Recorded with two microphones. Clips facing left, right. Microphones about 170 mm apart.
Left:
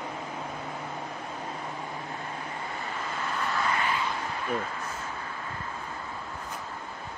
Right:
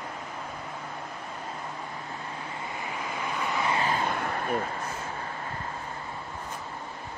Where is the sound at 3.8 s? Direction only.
40° right (ahead or behind).